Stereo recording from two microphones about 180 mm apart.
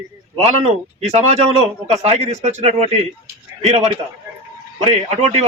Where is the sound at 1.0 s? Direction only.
35° right (ahead or behind).